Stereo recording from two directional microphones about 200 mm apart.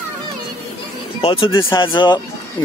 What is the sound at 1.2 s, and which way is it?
Speech, 25° left (ahead or behind).